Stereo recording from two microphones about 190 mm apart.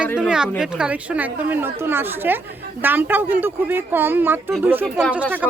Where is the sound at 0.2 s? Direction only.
5° right (ahead or behind).